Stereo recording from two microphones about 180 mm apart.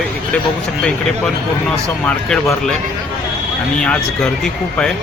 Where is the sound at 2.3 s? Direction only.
5° left (ahead or behind).